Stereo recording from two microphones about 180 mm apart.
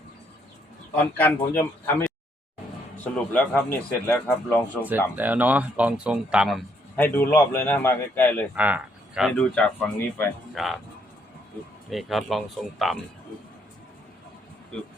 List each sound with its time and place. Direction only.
1.1 s a man's voice: 10° left (ahead or behind)
4.8 s speech: 10° right (ahead or behind)
6.9 s a man's voice: 10° left (ahead or behind)
8.5 s speech: 5° right (ahead or behind)
11.9 s speech: centre (ahead or behind)